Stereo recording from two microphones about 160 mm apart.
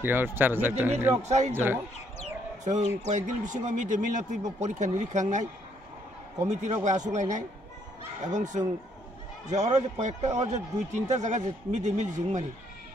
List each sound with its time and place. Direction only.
0.0 s speech: 15° right (ahead or behind)
1.2 s a man's voice: 45° right (ahead or behind)
1.5 s speech: 15° right (ahead or behind)
3.1 s a man's voice: 50° right (ahead or behind)
6.4 s a man's voice: 45° right (ahead or behind)